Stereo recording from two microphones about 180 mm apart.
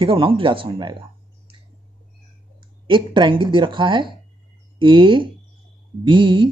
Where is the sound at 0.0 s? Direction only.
30° right (ahead or behind).